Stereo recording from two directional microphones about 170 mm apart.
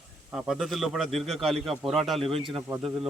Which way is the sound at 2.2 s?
30° right (ahead or behind).